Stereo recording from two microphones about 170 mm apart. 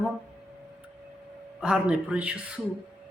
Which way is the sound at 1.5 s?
5° right (ahead or behind).